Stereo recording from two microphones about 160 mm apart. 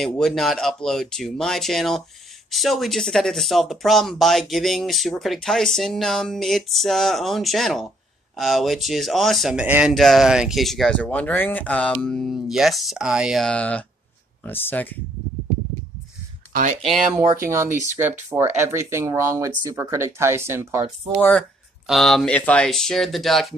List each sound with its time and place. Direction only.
0.0 s speech: centre (ahead or behind)
16.5 s speech: 60° right (ahead or behind)
16.9 s speech: centre (ahead or behind)
17.5 s speech: 20° right (ahead or behind)
21.2 s speech: 10° left (ahead or behind)